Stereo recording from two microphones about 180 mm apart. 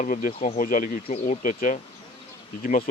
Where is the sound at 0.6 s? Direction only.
50° left (ahead or behind).